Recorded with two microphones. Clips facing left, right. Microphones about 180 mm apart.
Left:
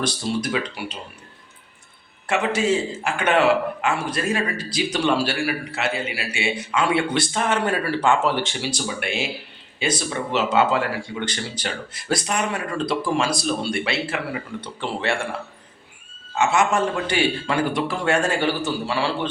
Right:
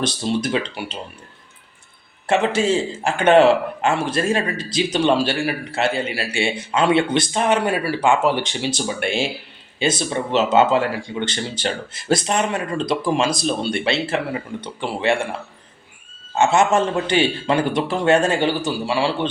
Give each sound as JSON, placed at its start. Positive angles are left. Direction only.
{"t": 0.0, "sound": "a man's voice", "side_deg": -25}
{"t": 2.2, "sound": "a man's voice", "side_deg": -25}
{"t": 16.3, "sound": "a man's voice", "side_deg": -25}